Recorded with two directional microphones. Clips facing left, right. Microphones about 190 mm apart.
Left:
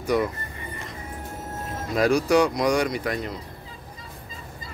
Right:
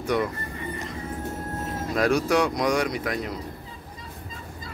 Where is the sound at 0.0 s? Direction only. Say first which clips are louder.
Left 2 dB; centre (ahead or behind).